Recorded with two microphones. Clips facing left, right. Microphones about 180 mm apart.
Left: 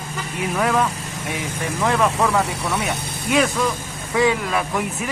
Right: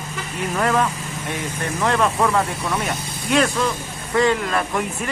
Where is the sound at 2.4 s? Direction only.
75° left (ahead or behind).